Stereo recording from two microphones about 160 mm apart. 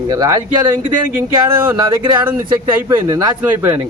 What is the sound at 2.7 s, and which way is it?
Speech, 20° right (ahead or behind).